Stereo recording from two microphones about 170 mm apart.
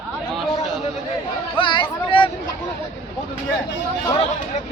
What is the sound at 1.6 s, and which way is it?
Chatter, 30° left (ahead or behind).